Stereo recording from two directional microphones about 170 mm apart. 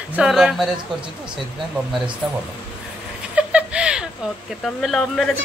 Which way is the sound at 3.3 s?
5° right (ahead or behind).